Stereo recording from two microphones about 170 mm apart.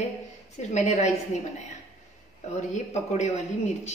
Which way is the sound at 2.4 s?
45° left (ahead or behind).